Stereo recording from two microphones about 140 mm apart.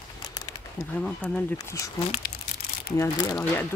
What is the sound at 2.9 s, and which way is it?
Speech, 20° left (ahead or behind).